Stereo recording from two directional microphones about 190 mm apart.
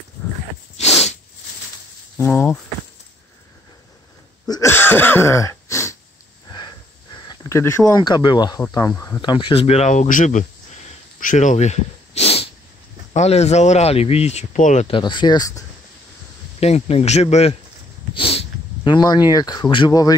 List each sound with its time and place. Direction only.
0.7 s a sound: 35° left (ahead or behind)
2.1 s speech: 10° left (ahead or behind)
4.5 s a sound: 15° left (ahead or behind)
7.2 s speech: 15° left (ahead or behind)
9.2 s speech: 25° left (ahead or behind)
15.0 s speech: 25° left (ahead or behind)
16.5 s speech: 35° left (ahead or behind)